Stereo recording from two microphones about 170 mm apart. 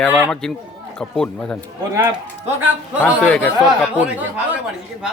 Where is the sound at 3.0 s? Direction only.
10° left (ahead or behind).